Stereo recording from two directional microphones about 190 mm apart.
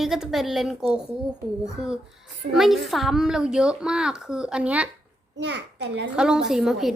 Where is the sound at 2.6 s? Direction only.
Centre (ahead or behind).